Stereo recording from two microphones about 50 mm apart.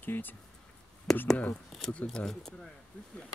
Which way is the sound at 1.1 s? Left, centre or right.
Centre.